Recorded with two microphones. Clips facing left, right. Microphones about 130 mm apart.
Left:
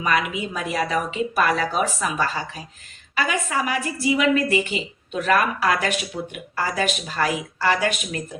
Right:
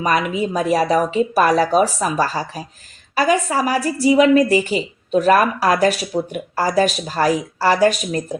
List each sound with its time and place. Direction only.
0.0 s a woman's voice: 40° right (ahead or behind)